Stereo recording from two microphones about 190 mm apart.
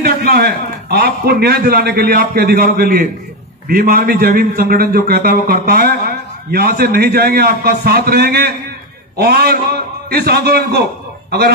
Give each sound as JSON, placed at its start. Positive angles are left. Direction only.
{"t": 0.0, "sound": "a man's voice", "side_deg": -55}